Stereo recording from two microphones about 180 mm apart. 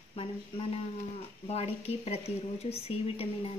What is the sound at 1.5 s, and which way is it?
Speech, 35° left (ahead or behind).